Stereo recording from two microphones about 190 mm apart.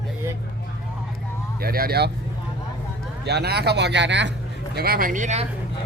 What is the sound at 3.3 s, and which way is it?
Speech, 60° right (ahead or behind).